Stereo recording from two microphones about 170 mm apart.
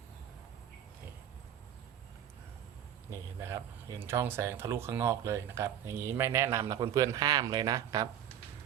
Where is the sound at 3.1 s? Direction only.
15° right (ahead or behind).